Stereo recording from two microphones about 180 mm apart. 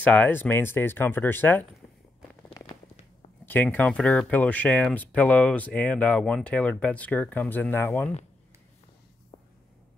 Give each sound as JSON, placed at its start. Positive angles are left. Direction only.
{"t": 0.0, "sound": "speech", "side_deg": 10}
{"t": 2.6, "sound": "a sound", "side_deg": 20}
{"t": 3.4, "sound": "speech", "side_deg": 10}